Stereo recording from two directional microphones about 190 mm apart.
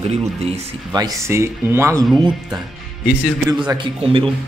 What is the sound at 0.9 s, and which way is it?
Speech, 15° right (ahead or behind).